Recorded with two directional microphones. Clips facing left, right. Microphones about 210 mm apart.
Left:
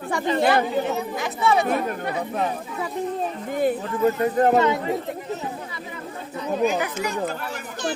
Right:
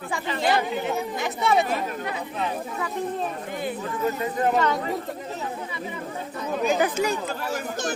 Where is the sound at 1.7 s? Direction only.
50° left (ahead or behind).